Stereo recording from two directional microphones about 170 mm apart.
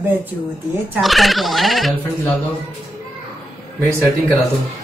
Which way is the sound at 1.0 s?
Centre (ahead or behind).